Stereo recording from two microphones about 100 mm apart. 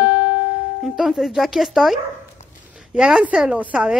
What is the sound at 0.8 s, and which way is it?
A woman's voice, 5° right (ahead or behind).